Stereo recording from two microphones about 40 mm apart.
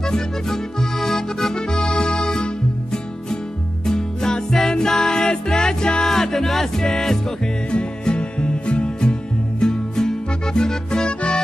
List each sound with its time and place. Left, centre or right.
0.0 s accordion: centre
3.8 s music: centre
7.7 s music: left